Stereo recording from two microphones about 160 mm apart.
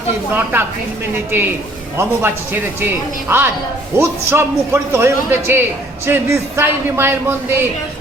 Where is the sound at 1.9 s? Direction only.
15° right (ahead or behind).